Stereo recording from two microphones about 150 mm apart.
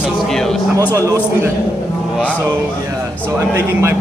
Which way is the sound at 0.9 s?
20° right (ahead or behind).